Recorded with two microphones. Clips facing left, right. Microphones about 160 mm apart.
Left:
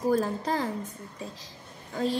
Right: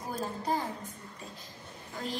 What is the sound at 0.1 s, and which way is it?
Speech, 90° left.